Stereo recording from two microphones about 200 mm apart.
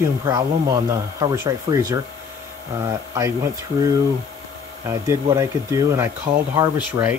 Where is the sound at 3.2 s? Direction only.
15° right (ahead or behind).